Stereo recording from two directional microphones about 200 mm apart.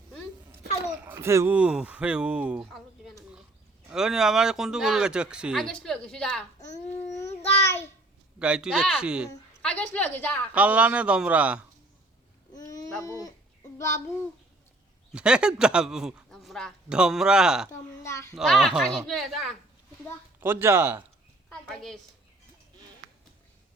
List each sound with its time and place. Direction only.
1.0 s speech: 10° right (ahead or behind); by 6.4 s 5° left (ahead or behind)
7.6 s a child's voice: 15° left (ahead or behind)
8.4 s speech: 5° right (ahead or behind)
9.6 s a woman's voice: 5° left (ahead or behind)
10.5 s a man's voice: 5° right (ahead or behind)
13.0 s a woman's voice: 15° left (ahead or behind)
13.7 s child singing: 15° left (ahead or behind)
15.1 s speech: 5° right (ahead or behind)
18.0 s a woman's voice: 15° left (ahead or behind)
18.3 s a man's voice: centre (ahead or behind)
21.5 s a woman's voice: centre (ahead or behind)